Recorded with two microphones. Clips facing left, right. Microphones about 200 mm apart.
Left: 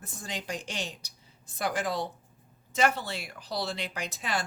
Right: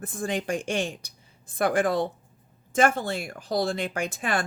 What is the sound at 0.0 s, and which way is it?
Speech, 55° right (ahead or behind).